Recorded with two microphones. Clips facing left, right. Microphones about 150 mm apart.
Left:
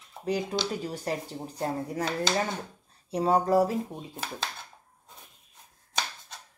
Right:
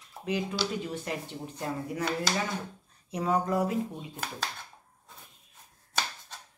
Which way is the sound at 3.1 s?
30° left (ahead or behind).